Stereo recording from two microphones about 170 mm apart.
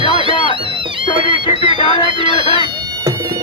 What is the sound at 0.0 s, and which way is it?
Music, 30° right (ahead or behind).